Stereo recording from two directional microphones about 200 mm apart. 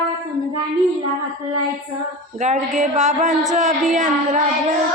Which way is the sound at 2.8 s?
35° right (ahead or behind).